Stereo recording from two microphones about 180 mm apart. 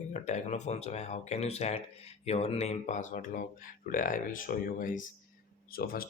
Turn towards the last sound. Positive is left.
turn(degrees=55)  # may be behind; listen again after turning